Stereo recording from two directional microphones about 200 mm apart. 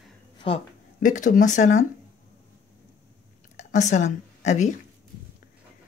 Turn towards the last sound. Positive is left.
turn(degrees=35)  # may be behind; listen again after turning